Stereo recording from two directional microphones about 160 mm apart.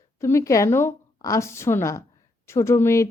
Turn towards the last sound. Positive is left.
turn(degrees=15)  # may be behind; listen again after turning